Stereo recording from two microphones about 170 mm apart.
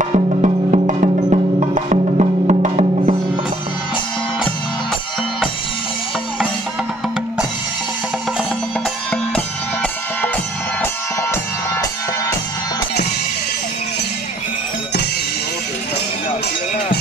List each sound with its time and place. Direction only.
0.0 s music: 40° right (ahead or behind)